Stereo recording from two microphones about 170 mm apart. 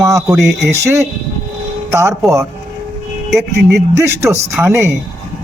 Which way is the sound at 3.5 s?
15° right (ahead or behind).